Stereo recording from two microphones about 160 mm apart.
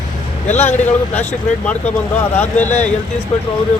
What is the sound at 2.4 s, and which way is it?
Speech, 10° left (ahead or behind).